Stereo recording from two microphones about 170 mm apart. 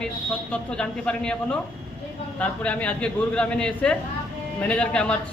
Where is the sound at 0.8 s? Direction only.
5° left (ahead or behind).